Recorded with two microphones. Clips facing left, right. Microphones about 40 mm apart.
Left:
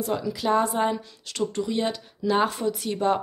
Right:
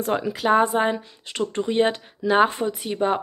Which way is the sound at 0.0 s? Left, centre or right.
Right.